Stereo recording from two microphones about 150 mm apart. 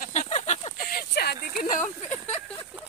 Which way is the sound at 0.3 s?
50° left (ahead or behind).